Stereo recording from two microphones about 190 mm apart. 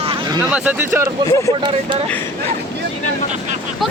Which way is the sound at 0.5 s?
5° right (ahead or behind).